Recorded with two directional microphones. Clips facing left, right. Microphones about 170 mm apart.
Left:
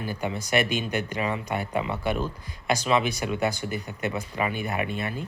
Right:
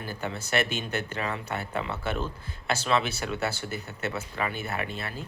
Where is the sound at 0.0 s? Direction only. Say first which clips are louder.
Left 4 dB; 10° left (ahead or behind).